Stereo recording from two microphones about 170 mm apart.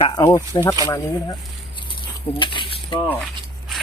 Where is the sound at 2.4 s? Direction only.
30° left (ahead or behind).